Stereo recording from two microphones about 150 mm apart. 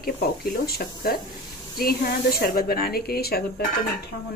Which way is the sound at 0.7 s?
85° left.